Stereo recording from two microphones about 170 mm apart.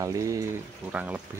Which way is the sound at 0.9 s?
10° right (ahead or behind).